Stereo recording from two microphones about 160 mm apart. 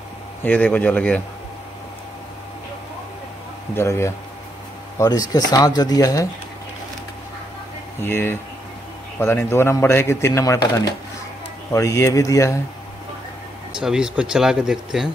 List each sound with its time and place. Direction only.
0.4 s speech: 10° left (ahead or behind)
3.7 s speech: 15° left (ahead or behind)
8.0 s speech: 15° left (ahead or behind)
13.7 s speech: 5° right (ahead or behind)